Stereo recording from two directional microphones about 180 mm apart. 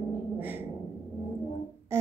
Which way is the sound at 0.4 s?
10° right (ahead or behind).